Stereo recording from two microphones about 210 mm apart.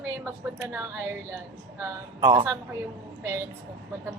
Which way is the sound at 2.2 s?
20° right (ahead or behind).